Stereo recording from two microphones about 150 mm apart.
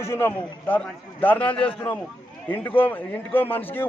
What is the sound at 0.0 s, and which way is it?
A man's voice, 15° left (ahead or behind).